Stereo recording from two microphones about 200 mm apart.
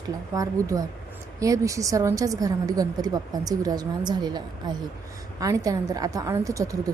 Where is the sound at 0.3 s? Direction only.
15° right (ahead or behind).